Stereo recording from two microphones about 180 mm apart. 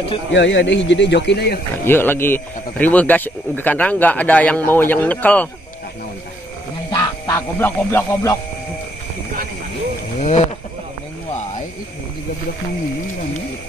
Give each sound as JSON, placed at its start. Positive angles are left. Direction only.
{"t": 0.3, "sound": "speech", "side_deg": 90}
{"t": 1.9, "sound": "speech", "side_deg": 10}
{"t": 6.9, "sound": "music", "side_deg": 20}